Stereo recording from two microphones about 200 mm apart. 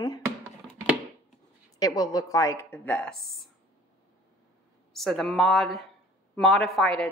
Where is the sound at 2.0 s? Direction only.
15° left (ahead or behind).